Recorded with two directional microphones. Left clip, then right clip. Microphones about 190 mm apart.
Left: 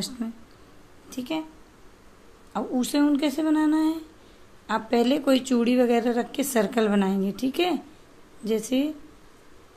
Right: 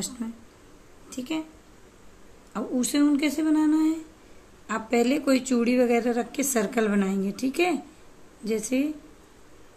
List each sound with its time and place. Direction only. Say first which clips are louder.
0.2 s a woman's voice: left 2 dB; 15° left (ahead or behind)
2.5 s a woman's voice: left 1 dB; 5° left (ahead or behind)